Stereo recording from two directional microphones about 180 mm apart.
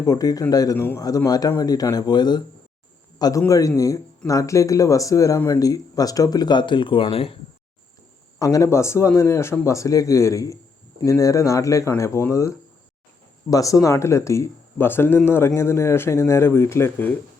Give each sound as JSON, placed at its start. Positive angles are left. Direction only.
{"t": 0.0, "sound": "a man's voice", "side_deg": 20}
{"t": 8.4, "sound": "speech", "side_deg": 20}